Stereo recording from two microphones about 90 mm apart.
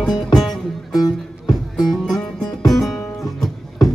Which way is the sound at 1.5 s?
Centre (ahead or behind).